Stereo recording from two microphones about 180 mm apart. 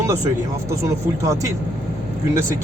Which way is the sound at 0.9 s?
15° right (ahead or behind).